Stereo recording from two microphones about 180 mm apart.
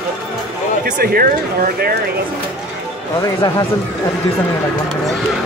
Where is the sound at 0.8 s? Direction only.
60° right (ahead or behind).